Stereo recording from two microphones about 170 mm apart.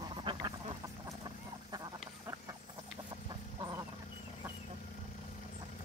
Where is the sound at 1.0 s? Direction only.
25° right (ahead or behind).